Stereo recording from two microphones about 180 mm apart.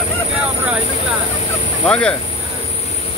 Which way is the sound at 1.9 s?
5° left (ahead or behind).